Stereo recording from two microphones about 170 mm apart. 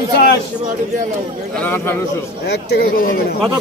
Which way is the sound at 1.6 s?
15° left (ahead or behind).